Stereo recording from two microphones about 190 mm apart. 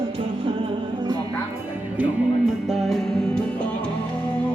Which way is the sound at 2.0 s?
5° right (ahead or behind).